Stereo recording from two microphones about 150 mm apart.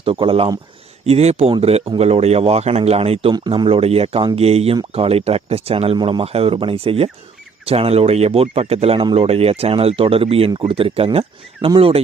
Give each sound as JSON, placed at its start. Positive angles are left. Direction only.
{"t": 0.0, "sound": "a man's voice", "side_deg": -35}
{"t": 3.3, "sound": "speech", "side_deg": -30}